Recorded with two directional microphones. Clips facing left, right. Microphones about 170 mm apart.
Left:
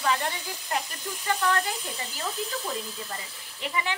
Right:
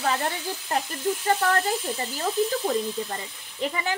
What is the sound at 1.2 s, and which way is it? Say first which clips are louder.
Speech: right 1 dB; 45° right (ahead or behind).